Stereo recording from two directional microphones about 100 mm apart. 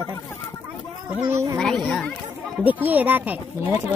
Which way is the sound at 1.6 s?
5° left (ahead or behind).